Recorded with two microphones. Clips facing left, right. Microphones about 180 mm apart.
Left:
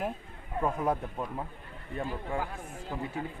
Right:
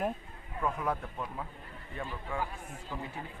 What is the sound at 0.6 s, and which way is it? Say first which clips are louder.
Speech: left 4 dB; 30° left (ahead or behind).